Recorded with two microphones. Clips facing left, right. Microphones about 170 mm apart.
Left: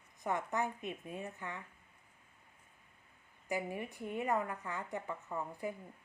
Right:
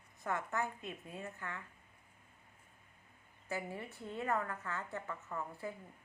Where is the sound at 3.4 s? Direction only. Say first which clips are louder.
Left 4 dB; 15° left (ahead or behind).